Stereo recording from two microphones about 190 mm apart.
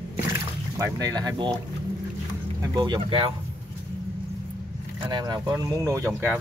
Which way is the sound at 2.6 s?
20° right (ahead or behind).